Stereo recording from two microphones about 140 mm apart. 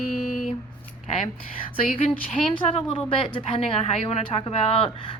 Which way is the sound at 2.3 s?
50° left (ahead or behind).